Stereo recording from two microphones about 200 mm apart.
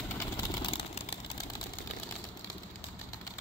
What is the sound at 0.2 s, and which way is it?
Vehicle, 20° left (ahead or behind).